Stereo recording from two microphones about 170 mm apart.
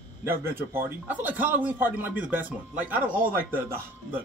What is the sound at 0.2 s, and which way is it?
A man's voice, 15° right (ahead or behind).